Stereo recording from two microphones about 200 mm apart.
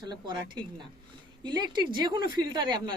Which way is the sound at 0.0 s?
20° right (ahead or behind).